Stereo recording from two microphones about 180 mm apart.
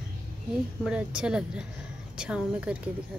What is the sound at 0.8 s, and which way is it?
A woman's voice, 5° right (ahead or behind).